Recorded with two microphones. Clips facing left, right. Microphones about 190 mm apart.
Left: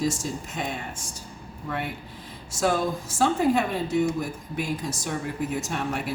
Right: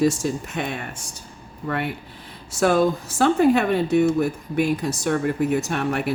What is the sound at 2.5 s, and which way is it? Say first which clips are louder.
Speech: right 6 dB; 65° right (ahead or behind).